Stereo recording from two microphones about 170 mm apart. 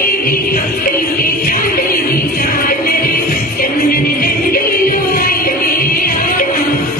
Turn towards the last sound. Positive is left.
turn(degrees=55)  # may be behind; listen again after turning